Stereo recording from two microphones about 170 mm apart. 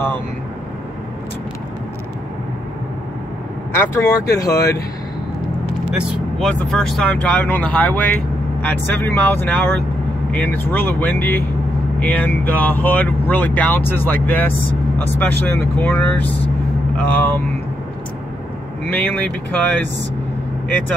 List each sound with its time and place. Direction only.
3.7 s speech: 15° left (ahead or behind)
5.9 s speech: centre (ahead or behind)
18.9 s speech: 10° left (ahead or behind)